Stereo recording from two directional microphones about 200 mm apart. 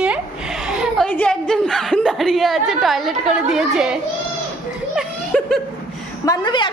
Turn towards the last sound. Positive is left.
turn(degrees=20)  # may be behind; listen again after turning